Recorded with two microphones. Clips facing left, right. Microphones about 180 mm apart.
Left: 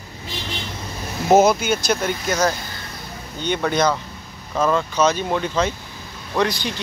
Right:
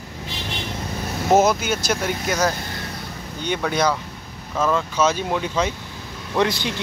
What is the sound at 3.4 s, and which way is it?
Speech, 5° right (ahead or behind).